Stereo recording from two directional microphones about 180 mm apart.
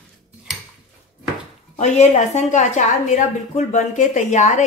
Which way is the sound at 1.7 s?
40° left (ahead or behind).